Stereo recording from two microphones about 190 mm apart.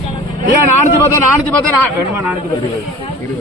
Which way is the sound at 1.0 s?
15° left (ahead or behind).